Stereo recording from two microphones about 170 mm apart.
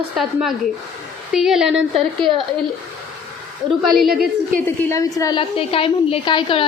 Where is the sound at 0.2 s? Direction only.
Centre (ahead or behind).